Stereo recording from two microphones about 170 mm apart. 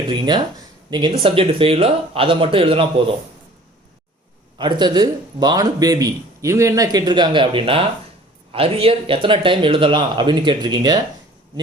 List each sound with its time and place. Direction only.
0.1 s a man's voice: 25° right (ahead or behind)
4.5 s a man's voice: 25° right (ahead or behind)